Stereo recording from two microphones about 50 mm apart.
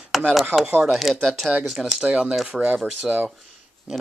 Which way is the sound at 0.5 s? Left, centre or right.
Right.